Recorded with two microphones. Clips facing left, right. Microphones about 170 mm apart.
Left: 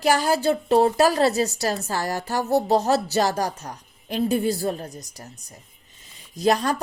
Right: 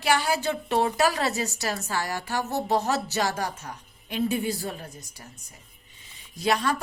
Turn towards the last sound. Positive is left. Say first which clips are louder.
# left 4 dB
turn(degrees=40)  # may be behind; listen again after turning